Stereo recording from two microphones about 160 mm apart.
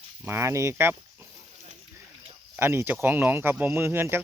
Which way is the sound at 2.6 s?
15° right (ahead or behind).